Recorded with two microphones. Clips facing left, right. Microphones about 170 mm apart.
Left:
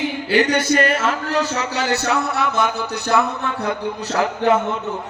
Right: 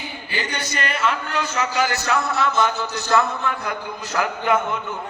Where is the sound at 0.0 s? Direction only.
85° left.